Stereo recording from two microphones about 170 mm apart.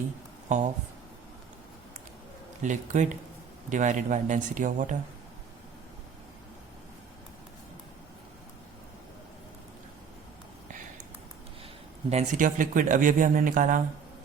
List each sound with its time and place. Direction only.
0.4 s speech: 45° right (ahead or behind)
2.6 s speech: 45° right (ahead or behind)
12.1 s speech: 50° right (ahead or behind)